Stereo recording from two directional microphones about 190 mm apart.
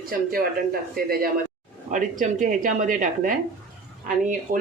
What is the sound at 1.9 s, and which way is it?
Speech, 40° right (ahead or behind).